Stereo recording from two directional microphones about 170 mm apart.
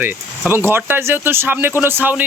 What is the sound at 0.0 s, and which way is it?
Speech, 10° right (ahead or behind).